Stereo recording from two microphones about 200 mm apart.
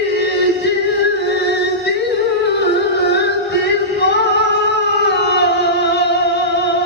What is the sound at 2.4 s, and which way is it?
Music, 60° left (ahead or behind).